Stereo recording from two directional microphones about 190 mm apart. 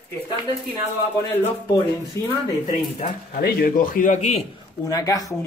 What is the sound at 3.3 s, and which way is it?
A man's voice, 55° left (ahead or behind).